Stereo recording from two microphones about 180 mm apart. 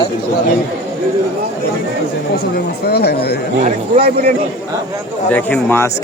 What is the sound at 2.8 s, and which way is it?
Speech, 65° left (ahead or behind).